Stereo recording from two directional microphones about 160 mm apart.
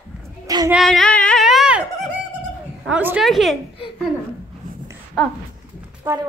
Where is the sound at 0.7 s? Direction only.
Centre (ahead or behind).